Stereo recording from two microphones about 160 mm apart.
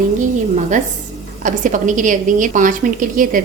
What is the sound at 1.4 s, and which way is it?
A woman's voice, 55° right (ahead or behind).